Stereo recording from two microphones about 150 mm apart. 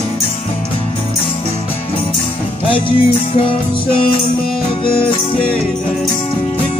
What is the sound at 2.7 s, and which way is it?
Music, 35° left (ahead or behind).